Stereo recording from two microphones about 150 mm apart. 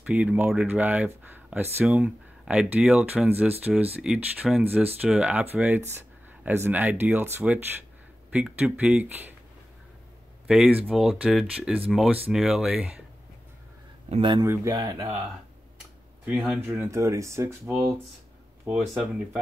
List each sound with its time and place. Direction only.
0.0 s speech: 10° right (ahead or behind)
10.4 s speech: 5° right (ahead or behind)
14.0 s speech: 35° right (ahead or behind)
14.4 s speech: 20° right (ahead or behind)
16.3 s speech: 10° right (ahead or behind)